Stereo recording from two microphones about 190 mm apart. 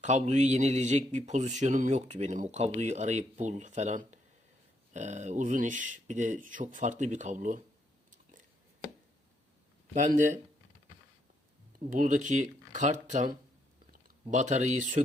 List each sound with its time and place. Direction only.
0.0 s speech: 40° right (ahead or behind)
9.9 s speech: 40° right (ahead or behind)
11.9 s speech: 40° right (ahead or behind)
13.9 s a sound: 40° right (ahead or behind)